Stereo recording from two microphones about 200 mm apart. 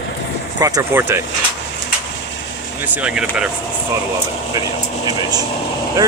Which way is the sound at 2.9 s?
5° right (ahead or behind).